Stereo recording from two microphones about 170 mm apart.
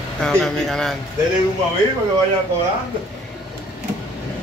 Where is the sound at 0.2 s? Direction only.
5° left (ahead or behind).